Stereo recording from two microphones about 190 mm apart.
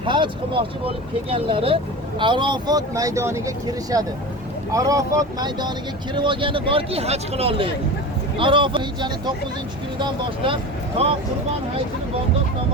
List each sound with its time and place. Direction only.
0.0 s speech: 25° right (ahead or behind)